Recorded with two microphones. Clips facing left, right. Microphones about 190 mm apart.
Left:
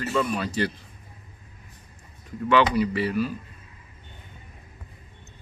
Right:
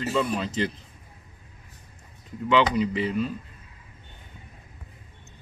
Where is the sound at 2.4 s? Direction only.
20° right (ahead or behind).